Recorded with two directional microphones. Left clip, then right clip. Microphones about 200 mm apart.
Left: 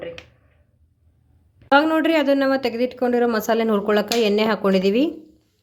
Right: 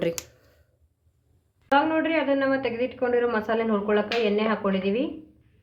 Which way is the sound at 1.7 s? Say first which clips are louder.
Left 5 dB; 55° left (ahead or behind).